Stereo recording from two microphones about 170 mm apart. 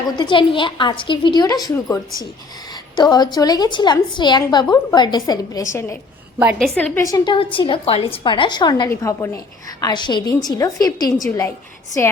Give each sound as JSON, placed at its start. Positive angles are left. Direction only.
{"t": 0.2, "sound": "a woman's voice", "side_deg": 30}
{"t": 6.6, "sound": "a woman's voice", "side_deg": 5}
{"t": 7.0, "sound": "a woman's voice", "side_deg": 20}
{"t": 7.3, "sound": "a woman's voice", "side_deg": 30}